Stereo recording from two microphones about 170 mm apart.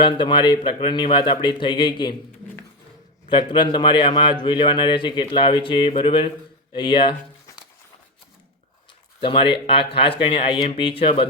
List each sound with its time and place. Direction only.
0.0 s a man's voice: 30° left (ahead or behind)
3.2 s a man's voice: 30° left (ahead or behind)
9.2 s speech: 30° left (ahead or behind)